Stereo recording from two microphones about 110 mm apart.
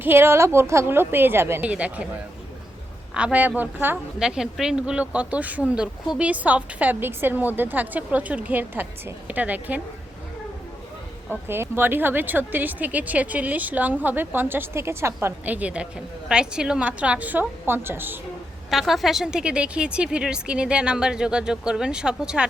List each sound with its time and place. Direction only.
0.0 s a woman's voice: 20° right (ahead or behind)
1.7 s speech: 10° right (ahead or behind)
3.2 s speech: 10° right (ahead or behind)
4.2 s speech: 5° right (ahead or behind)
11.4 s speech: 20° right (ahead or behind)
18.7 s speech: centre (ahead or behind)